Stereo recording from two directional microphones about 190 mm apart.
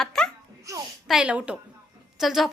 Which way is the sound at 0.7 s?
15° right (ahead or behind).